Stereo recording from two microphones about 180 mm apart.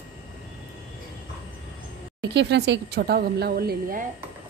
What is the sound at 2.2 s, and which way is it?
Speech, 70° right (ahead or behind).